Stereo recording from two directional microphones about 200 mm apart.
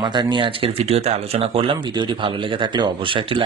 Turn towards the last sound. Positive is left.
turn(degrees=-25)  # may be behind; listen again after turning